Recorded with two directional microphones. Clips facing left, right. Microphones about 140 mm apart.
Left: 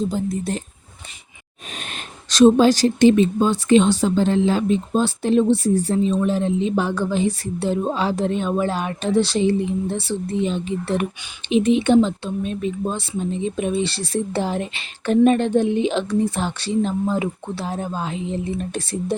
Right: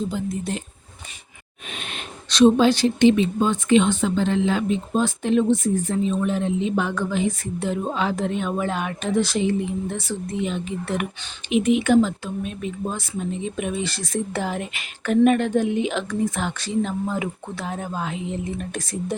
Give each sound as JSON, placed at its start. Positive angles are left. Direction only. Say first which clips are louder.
{"t": 0.1, "sound": "speech", "louder": "left 3 dB", "side_deg": 40}
{"t": 1.7, "sound": "speech", "louder": "even", "side_deg": 40}